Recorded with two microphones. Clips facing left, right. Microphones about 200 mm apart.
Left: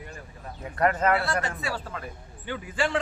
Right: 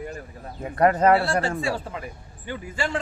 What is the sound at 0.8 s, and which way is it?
A man's voice, 35° right (ahead or behind).